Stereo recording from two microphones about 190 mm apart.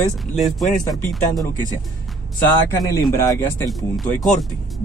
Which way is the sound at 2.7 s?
20° left (ahead or behind).